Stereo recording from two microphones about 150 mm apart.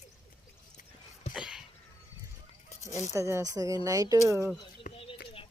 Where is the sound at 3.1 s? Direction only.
20° right (ahead or behind).